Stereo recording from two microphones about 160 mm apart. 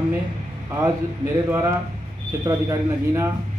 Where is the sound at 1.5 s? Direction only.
20° right (ahead or behind).